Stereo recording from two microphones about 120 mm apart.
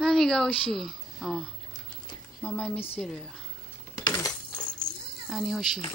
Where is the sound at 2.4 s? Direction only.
10° left (ahead or behind).